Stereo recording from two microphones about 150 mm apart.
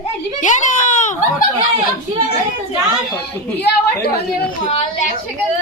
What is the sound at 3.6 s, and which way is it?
Speech, 90° left.